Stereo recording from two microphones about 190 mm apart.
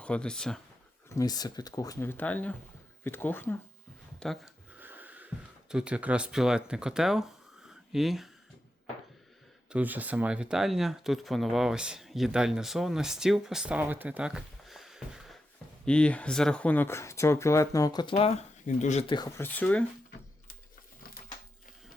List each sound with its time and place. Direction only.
0.0 s speech: 5° left (ahead or behind)
1.1 s speech: 20° left (ahead or behind); by 4.5 s centre (ahead or behind)
4.8 s speech: 10° right (ahead or behind)
7.7 s a sound: centre (ahead or behind)
9.6 s speech: 10° right (ahead or behind); by 19.1 s 35° left (ahead or behind)
19.1 s speech: 20° left (ahead or behind)
19.5 s speech: 10° left (ahead or behind)